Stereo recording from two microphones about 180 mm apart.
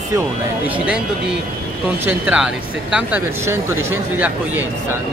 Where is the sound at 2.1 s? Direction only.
5° right (ahead or behind).